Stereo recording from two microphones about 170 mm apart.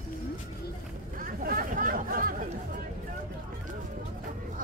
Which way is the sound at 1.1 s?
55° right (ahead or behind).